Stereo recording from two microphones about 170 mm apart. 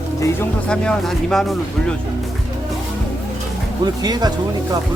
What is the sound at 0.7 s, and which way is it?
Speech, 5° left (ahead or behind).